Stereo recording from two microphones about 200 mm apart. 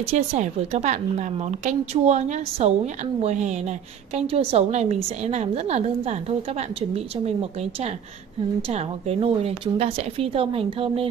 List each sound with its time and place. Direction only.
0.0 s a woman's voice: 35° right (ahead or behind)
8.6 s a woman's voice: 30° right (ahead or behind)